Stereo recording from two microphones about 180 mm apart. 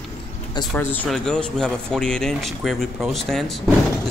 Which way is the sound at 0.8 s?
10° left (ahead or behind).